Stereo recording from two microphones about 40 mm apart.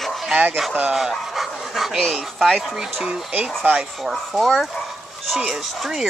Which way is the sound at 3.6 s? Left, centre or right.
Right.